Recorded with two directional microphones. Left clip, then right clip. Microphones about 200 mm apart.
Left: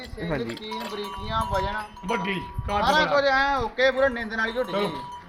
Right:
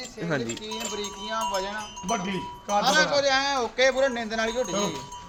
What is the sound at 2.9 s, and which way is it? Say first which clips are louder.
A man's voice: left 2 dB; 35° right (ahead or behind).